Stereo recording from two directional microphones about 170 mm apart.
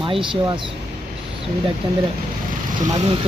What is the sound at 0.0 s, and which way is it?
Speech, 30° right (ahead or behind).